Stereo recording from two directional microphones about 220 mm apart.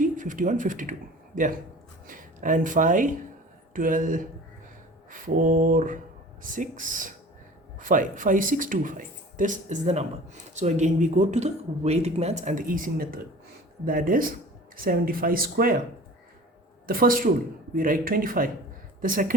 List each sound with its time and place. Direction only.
0.0 s speech: 35° right (ahead or behind)
16.8 s speech: 40° right (ahead or behind)